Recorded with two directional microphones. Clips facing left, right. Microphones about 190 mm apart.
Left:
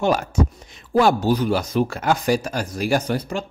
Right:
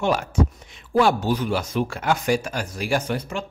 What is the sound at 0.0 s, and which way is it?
Speech, 40° left (ahead or behind).